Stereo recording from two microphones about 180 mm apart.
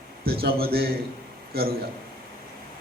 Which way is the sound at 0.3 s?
60° right (ahead or behind).